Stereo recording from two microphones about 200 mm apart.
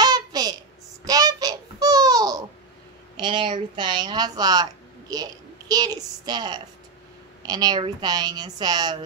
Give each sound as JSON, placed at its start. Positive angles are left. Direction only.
{"t": 0.0, "sound": "child singing", "side_deg": -20}
{"t": 3.2, "sound": "a woman's voice", "side_deg": -25}